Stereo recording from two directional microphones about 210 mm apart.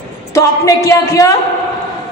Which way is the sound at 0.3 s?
15° left (ahead or behind).